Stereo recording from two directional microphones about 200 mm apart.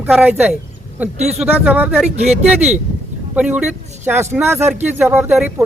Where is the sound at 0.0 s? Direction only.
5° right (ahead or behind).